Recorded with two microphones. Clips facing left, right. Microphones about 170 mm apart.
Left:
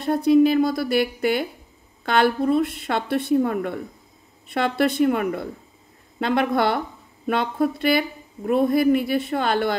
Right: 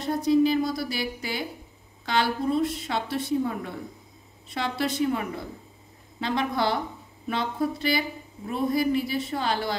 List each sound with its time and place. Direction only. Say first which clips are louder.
0.0 s a woman's voice: left 5 dB; 55° left (ahead or behind)